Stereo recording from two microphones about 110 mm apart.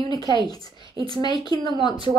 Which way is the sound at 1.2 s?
35° left (ahead or behind).